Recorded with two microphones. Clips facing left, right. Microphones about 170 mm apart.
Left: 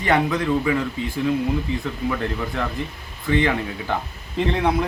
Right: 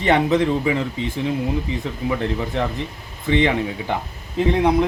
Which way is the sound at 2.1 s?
20° right (ahead or behind).